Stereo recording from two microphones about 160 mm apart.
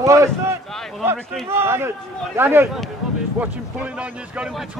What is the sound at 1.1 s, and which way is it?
Speech, centre (ahead or behind).